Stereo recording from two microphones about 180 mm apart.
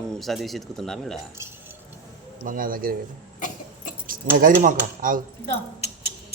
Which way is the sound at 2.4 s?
50° right (ahead or behind).